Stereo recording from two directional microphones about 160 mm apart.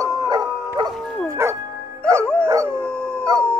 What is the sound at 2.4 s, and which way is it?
Howl, 20° right (ahead or behind).